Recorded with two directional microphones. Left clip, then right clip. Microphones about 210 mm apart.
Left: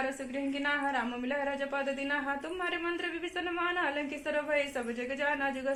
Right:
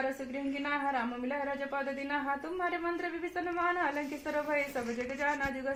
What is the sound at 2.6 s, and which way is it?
A woman's voice, 40° right (ahead or behind).